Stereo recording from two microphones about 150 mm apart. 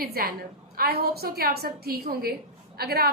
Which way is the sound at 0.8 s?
90° right.